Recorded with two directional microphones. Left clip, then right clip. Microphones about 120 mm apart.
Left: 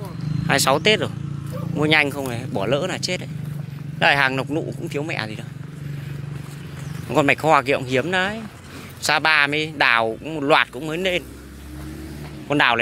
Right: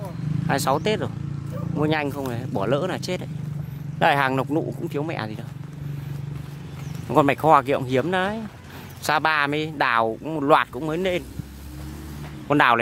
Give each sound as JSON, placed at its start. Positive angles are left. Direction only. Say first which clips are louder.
{"t": 0.5, "sound": "speech", "louder": "left 5 dB", "side_deg": -10}
{"t": 2.2, "sound": "speech", "louder": "left 1 dB", "side_deg": -25}
{"t": 7.2, "sound": "speech", "louder": "even", "side_deg": -30}
{"t": 10.2, "sound": "a man's voice", "louder": "left 1 dB", "side_deg": -45}
{"t": 12.4, "sound": "a man's voice", "louder": "even", "side_deg": -50}